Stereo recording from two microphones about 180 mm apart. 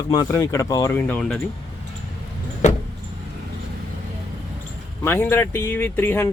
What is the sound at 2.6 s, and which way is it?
Vehicle, 40° left (ahead or behind).